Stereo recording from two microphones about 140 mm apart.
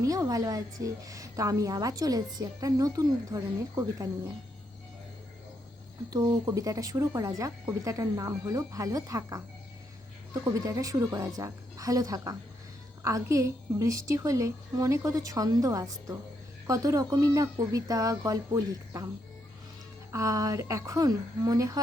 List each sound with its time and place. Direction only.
0.0 s a woman's voice: 25° right (ahead or behind)
6.1 s a woman's voice: 25° right (ahead or behind)
10.4 s a woman's voice: 25° right (ahead or behind)
20.1 s a woman's voice: 25° right (ahead or behind)